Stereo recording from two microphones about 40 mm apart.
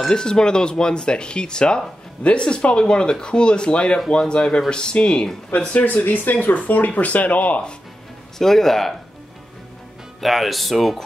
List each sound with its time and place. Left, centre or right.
0.1 s speech: centre
6.0 s speech: left
6.9 s speech: left
8.4 s speech: centre
10.2 s speech: centre